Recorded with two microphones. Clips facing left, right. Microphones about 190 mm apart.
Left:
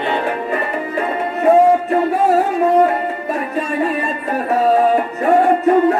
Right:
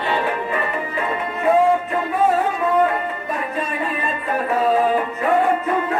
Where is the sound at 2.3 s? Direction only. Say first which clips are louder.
Left 5 dB; 40° left (ahead or behind).